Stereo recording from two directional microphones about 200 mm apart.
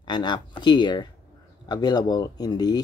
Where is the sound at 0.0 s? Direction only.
20° left (ahead or behind).